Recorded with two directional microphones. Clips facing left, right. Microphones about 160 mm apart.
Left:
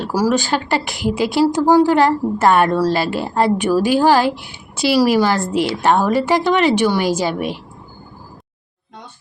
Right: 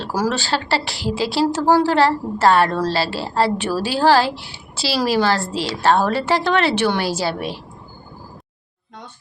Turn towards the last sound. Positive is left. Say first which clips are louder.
# left 4 dB
turn(degrees=15)  # may be behind; listen again after turning